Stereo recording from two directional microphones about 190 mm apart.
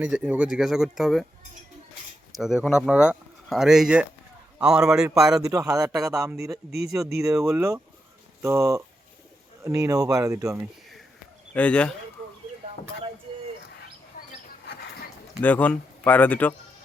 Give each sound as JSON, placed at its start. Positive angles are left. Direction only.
{"t": 0.0, "sound": "speech", "side_deg": -5}
{"t": 2.4, "sound": "speech", "side_deg": -5}
{"t": 5.3, "sound": "speech", "side_deg": -15}
{"t": 6.7, "sound": "speech", "side_deg": -60}
{"t": 7.4, "sound": "speech", "side_deg": -10}
{"t": 11.5, "sound": "speech", "side_deg": 5}
{"t": 14.2, "sound": "rodents", "side_deg": 45}
{"t": 15.4, "sound": "speech", "side_deg": 10}